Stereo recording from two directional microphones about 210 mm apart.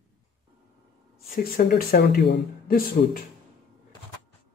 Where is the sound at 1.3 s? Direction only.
45° left (ahead or behind).